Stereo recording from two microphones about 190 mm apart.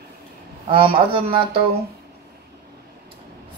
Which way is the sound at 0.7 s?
25° right (ahead or behind).